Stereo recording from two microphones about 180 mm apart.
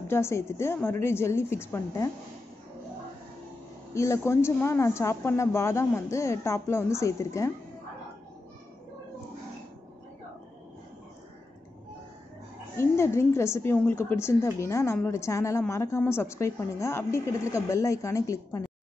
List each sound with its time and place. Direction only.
0.1 s a woman's voice: 15° left (ahead or behind)
3.9 s a woman's voice: 15° left (ahead or behind)
12.7 s a woman's voice: 15° left (ahead or behind)